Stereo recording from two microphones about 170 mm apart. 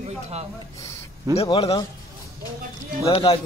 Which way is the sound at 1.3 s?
35° left (ahead or behind).